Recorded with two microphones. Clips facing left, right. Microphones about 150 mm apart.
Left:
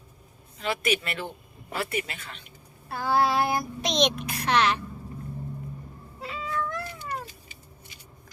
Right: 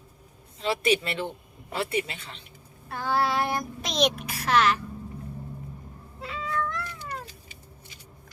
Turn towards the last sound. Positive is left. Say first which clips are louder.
# right 1 dB
turn(degrees=0)  # may be behind; listen again after turning